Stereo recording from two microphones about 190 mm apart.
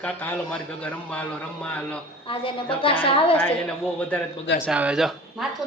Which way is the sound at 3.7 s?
5° left (ahead or behind).